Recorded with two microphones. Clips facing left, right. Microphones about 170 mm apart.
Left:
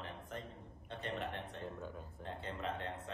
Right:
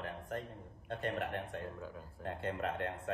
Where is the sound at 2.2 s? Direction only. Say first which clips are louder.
Right 5 dB; 60° right (ahead or behind).